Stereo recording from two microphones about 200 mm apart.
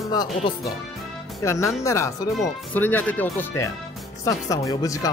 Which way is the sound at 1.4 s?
15° left (ahead or behind).